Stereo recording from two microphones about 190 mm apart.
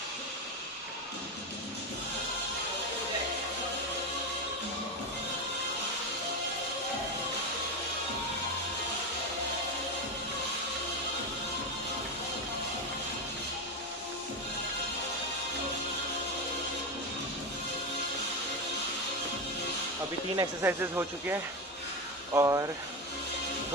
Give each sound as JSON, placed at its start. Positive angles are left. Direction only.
{"t": 20.3, "sound": "speech", "side_deg": -15}